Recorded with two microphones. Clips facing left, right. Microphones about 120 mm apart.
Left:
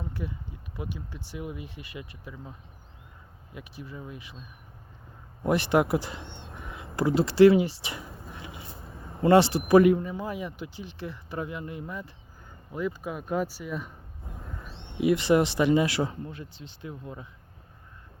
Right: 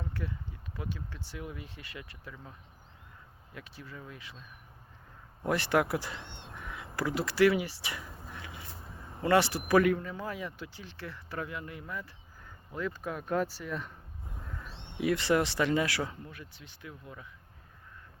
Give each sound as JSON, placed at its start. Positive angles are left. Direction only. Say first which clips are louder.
{"t": 0.0, "sound": "a sound", "louder": "left 3 dB", "side_deg": 15}
{"t": 0.8, "sound": "speech", "louder": "left 3 dB", "side_deg": 15}
{"t": 12.7, "sound": "speech", "louder": "left 4 dB", "side_deg": 10}
{"t": 15.0, "sound": "speech", "louder": "left 5 dB", "side_deg": 20}